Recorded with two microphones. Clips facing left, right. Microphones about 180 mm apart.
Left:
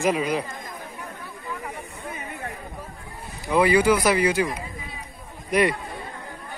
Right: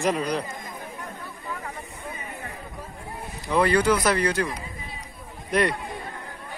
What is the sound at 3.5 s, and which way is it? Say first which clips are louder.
A man's voice: left 2 dB; 5° left (ahead or behind).